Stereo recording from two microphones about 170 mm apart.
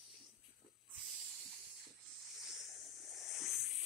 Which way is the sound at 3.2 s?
Centre (ahead or behind).